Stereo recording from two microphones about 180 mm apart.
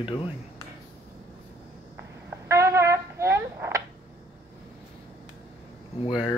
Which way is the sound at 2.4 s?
15° right (ahead or behind).